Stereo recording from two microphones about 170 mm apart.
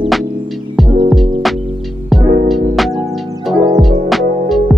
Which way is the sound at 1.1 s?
Centre (ahead or behind).